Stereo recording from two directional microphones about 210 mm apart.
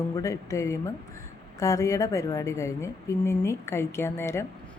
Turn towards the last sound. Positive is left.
turn(degrees=10)  # may be behind; listen again after turning